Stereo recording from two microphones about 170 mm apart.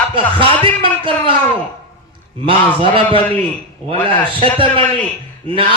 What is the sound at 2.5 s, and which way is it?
Speech, 30° right (ahead or behind).